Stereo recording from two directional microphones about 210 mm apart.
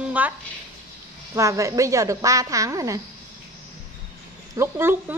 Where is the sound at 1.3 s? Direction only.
15° right (ahead or behind).